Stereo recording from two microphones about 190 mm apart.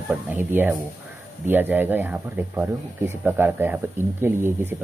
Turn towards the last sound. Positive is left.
turn(degrees=-10)  # may be behind; listen again after turning